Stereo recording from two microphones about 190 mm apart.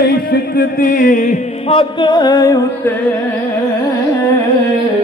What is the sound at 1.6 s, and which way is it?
Music, 25° left (ahead or behind).